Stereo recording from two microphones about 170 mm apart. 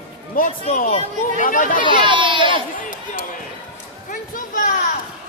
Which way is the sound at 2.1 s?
30° right (ahead or behind).